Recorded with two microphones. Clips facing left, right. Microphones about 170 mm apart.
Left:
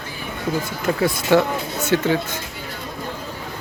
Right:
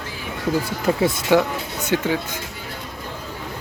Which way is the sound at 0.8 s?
25° right (ahead or behind).